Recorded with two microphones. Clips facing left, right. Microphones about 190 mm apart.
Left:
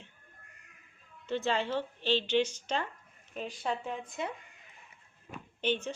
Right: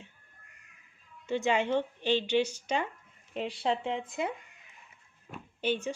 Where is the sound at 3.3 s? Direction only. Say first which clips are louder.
Right 4 dB; 30° right (ahead or behind).